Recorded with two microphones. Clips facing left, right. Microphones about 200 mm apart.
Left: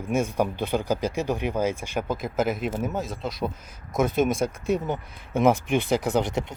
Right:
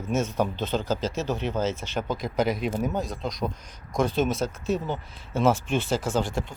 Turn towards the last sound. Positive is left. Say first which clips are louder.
# left 2 dB
turn(degrees=20)  # may be behind; listen again after turning